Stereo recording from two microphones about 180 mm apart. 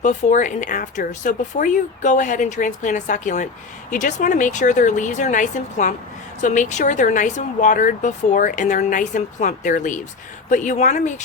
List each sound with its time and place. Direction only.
0.0 s speech: 40° left (ahead or behind)